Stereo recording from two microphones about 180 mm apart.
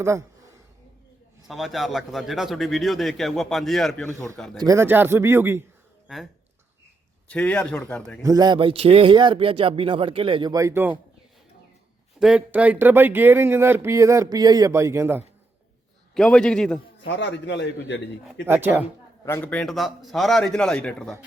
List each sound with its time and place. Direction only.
0.0 s a sound: 15° right (ahead or behind)
1.5 s speech: centre (ahead or behind)
4.6 s speech: 15° right (ahead or behind)
7.3 s speech: 5° left (ahead or behind)
8.2 s speech: 20° right (ahead or behind)
12.2 s speech: 5° right (ahead or behind)
16.1 s speech: 5° left (ahead or behind)
17.0 s a man's voice: 90° left
18.4 s speech: 10° right (ahead or behind)
19.2 s speech: 15° left (ahead or behind)